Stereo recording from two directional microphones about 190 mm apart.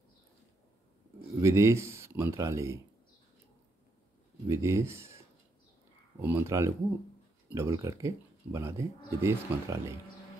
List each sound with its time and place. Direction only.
1.4 s speech: 15° right (ahead or behind)
4.5 s speech: 15° right (ahead or behind)
6.2 s speech: 15° right (ahead or behind)